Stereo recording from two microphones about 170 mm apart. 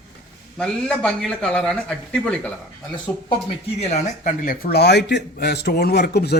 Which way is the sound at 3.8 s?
45° left (ahead or behind).